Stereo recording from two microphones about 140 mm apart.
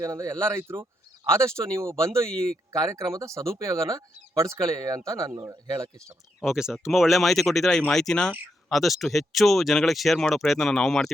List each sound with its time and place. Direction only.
0.0 s speech: 20° right (ahead or behind)
6.4 s speech: 5° right (ahead or behind)